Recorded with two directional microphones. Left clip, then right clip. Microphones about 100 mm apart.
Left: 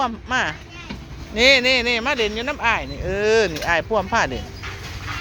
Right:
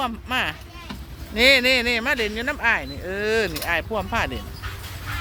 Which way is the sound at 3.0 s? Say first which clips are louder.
Left 5 dB; 40° right (ahead or behind).